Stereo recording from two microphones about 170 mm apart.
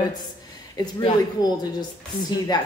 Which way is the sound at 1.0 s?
25° left (ahead or behind).